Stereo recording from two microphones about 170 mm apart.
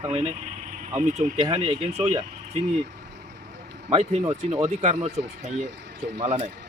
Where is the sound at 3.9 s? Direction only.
35° right (ahead or behind).